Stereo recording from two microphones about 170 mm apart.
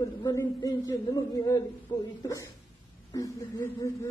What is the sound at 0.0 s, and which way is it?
A man's voice, 20° left (ahead or behind).